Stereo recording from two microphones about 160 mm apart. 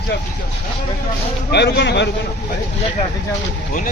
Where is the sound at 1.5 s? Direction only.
90° left.